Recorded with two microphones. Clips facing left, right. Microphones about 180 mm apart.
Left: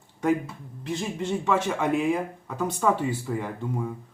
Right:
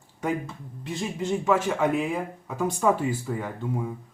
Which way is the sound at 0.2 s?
Centre (ahead or behind).